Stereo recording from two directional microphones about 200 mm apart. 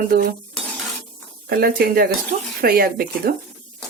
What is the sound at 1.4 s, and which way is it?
Speech, 50° right (ahead or behind).